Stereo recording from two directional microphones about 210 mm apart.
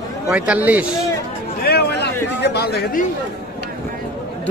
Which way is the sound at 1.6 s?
50° left (ahead or behind).